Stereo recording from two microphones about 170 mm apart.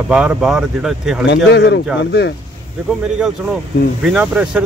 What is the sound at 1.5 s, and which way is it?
Speech, 80° left.